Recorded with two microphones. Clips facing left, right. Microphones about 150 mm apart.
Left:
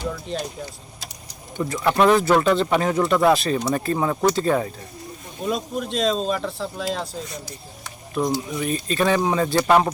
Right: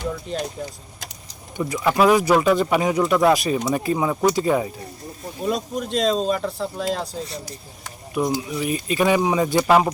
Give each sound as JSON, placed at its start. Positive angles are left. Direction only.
{"t": 0.3, "sound": "speech", "side_deg": -5}
{"t": 1.5, "sound": "speech", "side_deg": -10}
{"t": 5.4, "sound": "speech", "side_deg": 0}
{"t": 8.1, "sound": "speech", "side_deg": -10}
{"t": 9.6, "sound": "speech", "side_deg": -5}